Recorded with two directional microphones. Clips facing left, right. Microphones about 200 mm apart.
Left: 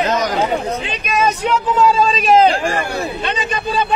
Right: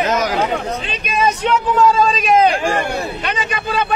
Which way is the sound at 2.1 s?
30° left (ahead or behind).